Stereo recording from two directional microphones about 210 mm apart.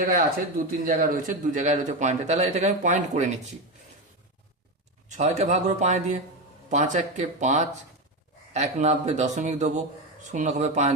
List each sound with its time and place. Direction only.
0.0 s a man's voice: 45° right (ahead or behind)
5.0 s a man's voice: 35° right (ahead or behind)